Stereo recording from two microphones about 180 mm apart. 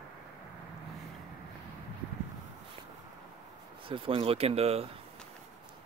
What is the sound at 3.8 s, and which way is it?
Speech, 30° right (ahead or behind).